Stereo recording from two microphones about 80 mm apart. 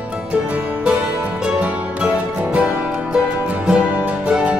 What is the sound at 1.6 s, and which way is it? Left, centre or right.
Music, centre.